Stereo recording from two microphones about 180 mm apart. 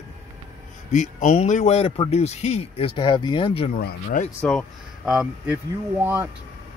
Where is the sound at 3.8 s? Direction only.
55° left (ahead or behind).